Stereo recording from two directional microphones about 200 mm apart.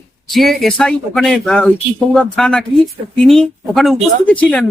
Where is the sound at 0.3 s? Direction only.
Centre (ahead or behind).